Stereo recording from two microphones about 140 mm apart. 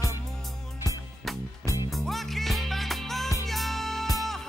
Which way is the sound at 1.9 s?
Centre (ahead or behind).